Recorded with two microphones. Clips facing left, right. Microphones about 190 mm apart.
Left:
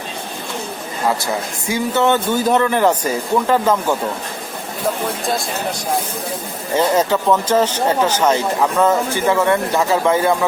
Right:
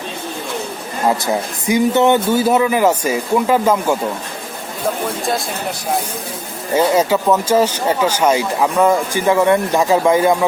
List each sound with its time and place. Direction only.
1.2 s speech: 20° right (ahead or behind)
6.7 s speech: 10° right (ahead or behind)